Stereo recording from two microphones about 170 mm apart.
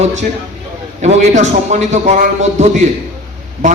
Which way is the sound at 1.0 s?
40° right (ahead or behind).